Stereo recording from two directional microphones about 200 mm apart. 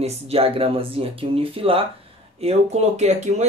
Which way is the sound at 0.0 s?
30° right (ahead or behind).